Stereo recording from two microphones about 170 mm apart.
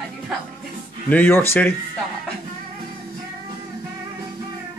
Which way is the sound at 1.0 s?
10° left (ahead or behind).